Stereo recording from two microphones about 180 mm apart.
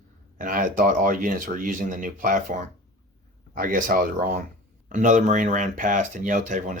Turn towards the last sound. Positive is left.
turn(degrees=-45)  # may be behind; listen again after turning